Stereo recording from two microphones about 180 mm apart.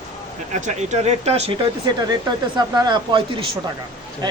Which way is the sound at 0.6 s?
40° right (ahead or behind).